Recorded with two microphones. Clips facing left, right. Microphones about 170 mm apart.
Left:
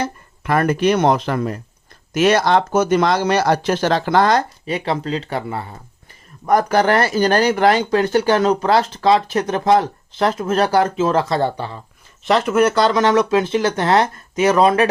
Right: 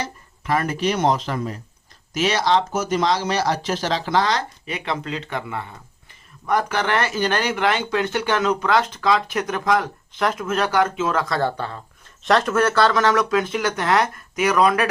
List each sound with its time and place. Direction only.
0.0 s speech: 60° left (ahead or behind)
4.6 s speech: 35° left (ahead or behind)